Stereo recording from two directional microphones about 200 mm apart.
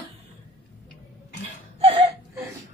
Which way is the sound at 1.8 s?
30° right (ahead or behind).